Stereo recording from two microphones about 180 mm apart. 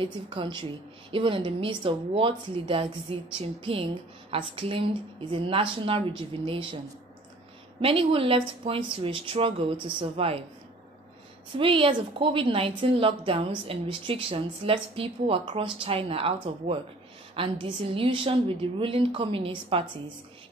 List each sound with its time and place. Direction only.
0.0 s a woman's voice: 25° right (ahead or behind)
7.8 s speech: 30° right (ahead or behind)
11.5 s a woman's voice: 30° right (ahead or behind)